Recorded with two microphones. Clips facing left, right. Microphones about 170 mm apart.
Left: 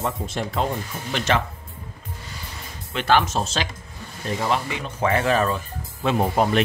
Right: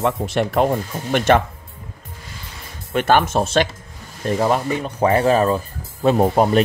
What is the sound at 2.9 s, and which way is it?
Speech, 50° right (ahead or behind).